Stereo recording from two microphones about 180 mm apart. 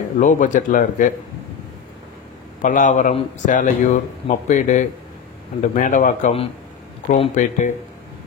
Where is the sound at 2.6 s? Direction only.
45° left (ahead or behind).